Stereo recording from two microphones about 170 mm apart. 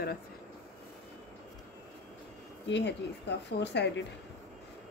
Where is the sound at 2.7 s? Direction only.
85° left.